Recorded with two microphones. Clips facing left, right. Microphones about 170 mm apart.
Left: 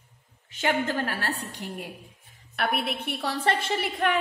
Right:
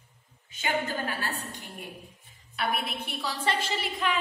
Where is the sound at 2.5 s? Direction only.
65° left (ahead or behind).